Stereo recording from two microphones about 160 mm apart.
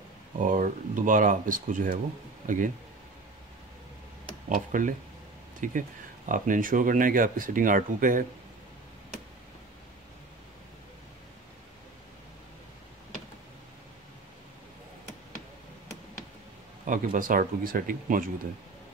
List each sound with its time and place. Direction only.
0.4 s speech: 55° right (ahead or behind)
4.6 s speech: 55° right (ahead or behind)
16.8 s speech: 55° right (ahead or behind)